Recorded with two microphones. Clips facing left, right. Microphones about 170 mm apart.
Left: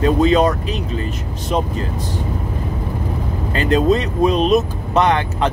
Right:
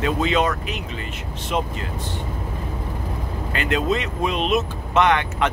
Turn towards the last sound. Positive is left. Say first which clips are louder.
# left 3 dB
turn(degrees=35)  # may be behind; listen again after turning